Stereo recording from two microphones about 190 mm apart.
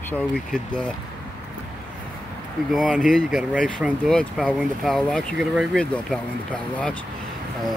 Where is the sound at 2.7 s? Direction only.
Centre (ahead or behind).